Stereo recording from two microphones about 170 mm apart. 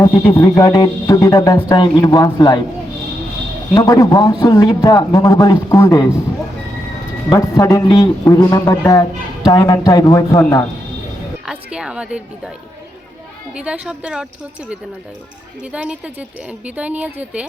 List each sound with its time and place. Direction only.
0.0 s a man's voice: 20° left (ahead or behind)
3.8 s a man's voice: 20° left (ahead or behind)
7.3 s a man's voice: 20° left (ahead or behind)
11.4 s a woman's voice: 5° right (ahead or behind)
13.5 s a woman's voice: 5° right (ahead or behind)
15.6 s speech: 5° right (ahead or behind)